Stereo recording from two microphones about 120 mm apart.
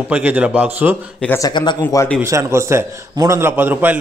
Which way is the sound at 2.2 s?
25° right (ahead or behind).